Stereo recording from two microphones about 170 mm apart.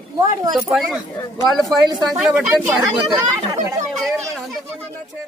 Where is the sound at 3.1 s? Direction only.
20° right (ahead or behind).